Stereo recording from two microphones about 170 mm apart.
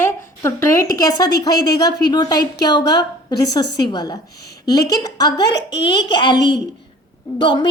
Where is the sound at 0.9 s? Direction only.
20° left (ahead or behind).